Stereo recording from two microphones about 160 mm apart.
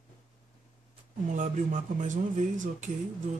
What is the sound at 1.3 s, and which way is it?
Speech, 50° right (ahead or behind).